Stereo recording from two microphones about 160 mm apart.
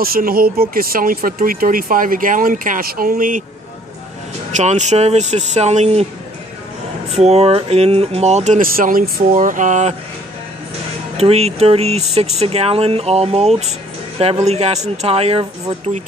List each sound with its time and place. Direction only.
0.0 s speech: 65° right (ahead or behind)
4.5 s speech: 50° right (ahead or behind)
7.2 s speech: 40° right (ahead or behind)
8.5 s speech: 60° right (ahead or behind)
11.1 s speech: 40° right (ahead or behind)